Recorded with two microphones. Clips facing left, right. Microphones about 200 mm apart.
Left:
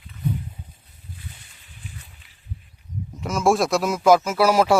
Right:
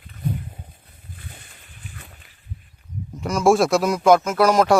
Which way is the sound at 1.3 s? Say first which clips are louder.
Right 3 dB; 50° right (ahead or behind).